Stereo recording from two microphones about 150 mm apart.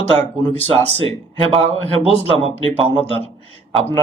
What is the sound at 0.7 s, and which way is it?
Speech, 40° right (ahead or behind).